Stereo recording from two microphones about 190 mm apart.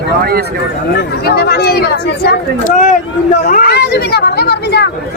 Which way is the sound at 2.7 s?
40° left (ahead or behind).